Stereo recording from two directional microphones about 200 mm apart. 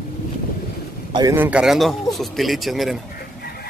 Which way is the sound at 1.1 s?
15° right (ahead or behind).